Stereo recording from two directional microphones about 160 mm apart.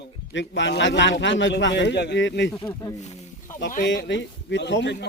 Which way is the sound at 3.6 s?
90° left.